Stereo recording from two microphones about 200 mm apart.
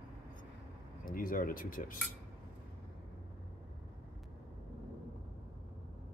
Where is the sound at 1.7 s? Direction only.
45° left (ahead or behind).